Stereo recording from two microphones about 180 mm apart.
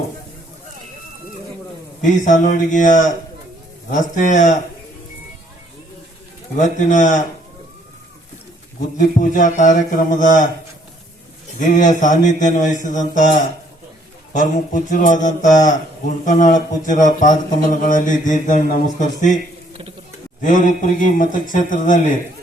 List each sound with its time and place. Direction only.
2.0 s a man's voice: 45° left (ahead or behind)
6.6 s a man's voice: 45° left (ahead or behind)
9.0 s a man's voice: 45° left (ahead or behind)
11.6 s a man's voice: 45° left (ahead or behind)
20.4 s a man's voice: 45° left (ahead or behind)